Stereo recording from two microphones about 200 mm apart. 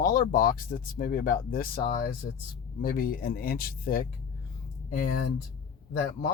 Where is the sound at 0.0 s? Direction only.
45° left (ahead or behind).